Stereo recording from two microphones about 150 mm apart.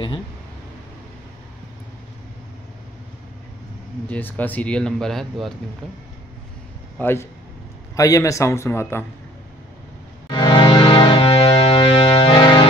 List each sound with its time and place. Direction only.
4.1 s speech: 10° left (ahead or behind)
7.0 s a man's voice: 15° left (ahead or behind)
10.2 s music: 30° left (ahead or behind)